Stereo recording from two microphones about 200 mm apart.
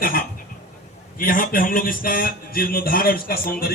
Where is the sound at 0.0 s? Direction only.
45° left (ahead or behind).